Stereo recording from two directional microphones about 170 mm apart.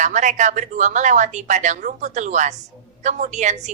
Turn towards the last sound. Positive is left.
turn(degrees=-45)  # may be behind; listen again after turning